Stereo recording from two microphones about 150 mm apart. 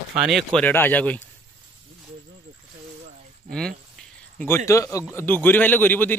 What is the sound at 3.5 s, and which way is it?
Speech, 5° left (ahead or behind).